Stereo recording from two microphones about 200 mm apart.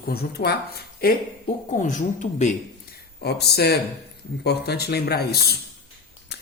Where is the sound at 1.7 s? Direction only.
40° left (ahead or behind).